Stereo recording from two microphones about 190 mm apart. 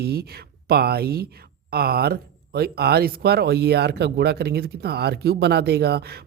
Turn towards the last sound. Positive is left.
turn(degrees=-55)  # may be behind; listen again after turning